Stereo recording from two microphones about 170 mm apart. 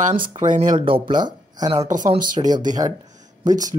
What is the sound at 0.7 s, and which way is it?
Speech, 30° right (ahead or behind).